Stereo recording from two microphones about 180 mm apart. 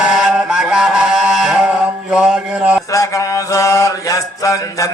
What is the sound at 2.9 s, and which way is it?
Mantra, 20° left (ahead or behind).